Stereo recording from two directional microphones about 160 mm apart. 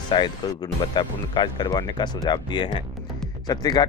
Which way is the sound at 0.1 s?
30° left (ahead or behind).